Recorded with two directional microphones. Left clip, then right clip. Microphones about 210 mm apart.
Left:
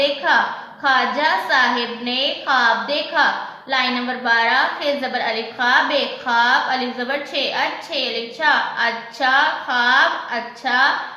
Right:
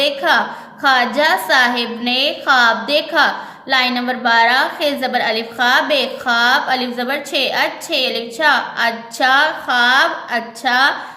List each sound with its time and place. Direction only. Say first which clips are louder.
0.2 s a woman's voice: right 2 dB; 50° right (ahead or behind)